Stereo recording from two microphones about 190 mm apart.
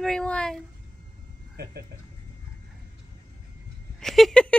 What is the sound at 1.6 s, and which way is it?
Speech, 55° right (ahead or behind).